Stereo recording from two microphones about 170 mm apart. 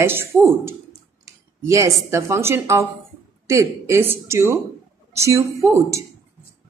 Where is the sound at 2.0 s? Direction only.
15° right (ahead or behind).